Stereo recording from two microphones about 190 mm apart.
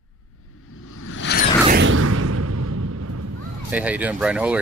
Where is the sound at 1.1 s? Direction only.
65° left (ahead or behind).